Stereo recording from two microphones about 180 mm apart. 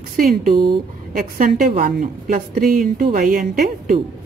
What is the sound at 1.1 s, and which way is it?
A woman's voice, 50° right (ahead or behind).